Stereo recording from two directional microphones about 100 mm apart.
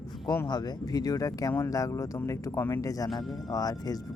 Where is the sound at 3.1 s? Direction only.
40° left (ahead or behind).